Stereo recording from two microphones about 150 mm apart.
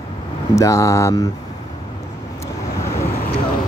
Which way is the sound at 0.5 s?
20° left (ahead or behind).